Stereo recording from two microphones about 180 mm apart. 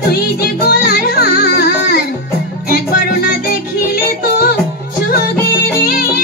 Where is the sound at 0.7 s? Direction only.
60° left (ahead or behind).